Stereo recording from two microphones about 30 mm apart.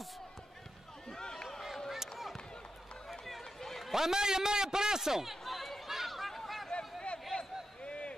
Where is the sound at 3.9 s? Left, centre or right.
Centre.